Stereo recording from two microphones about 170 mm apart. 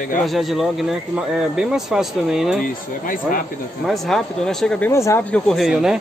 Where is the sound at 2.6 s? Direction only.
55° left (ahead or behind).